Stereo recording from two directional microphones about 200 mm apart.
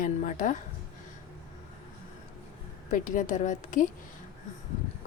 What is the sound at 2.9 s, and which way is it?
Speech, 40° left (ahead or behind).